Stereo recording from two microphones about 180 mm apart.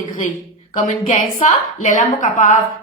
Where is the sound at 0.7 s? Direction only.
45° left (ahead or behind).